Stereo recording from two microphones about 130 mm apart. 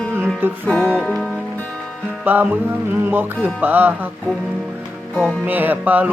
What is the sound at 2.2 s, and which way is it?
Music, 15° right (ahead or behind).